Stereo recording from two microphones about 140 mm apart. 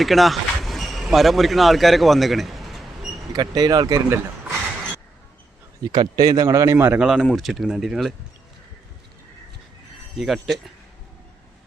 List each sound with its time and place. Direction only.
0.0 s speech: centre (ahead or behind)
3.3 s speech: 25° right (ahead or behind)
5.9 s a man's voice: 30° right (ahead or behind); by 8.1 s centre (ahead or behind)
10.2 s a man's voice: centre (ahead or behind)